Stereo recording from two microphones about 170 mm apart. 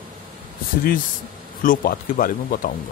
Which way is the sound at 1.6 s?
55° left (ahead or behind).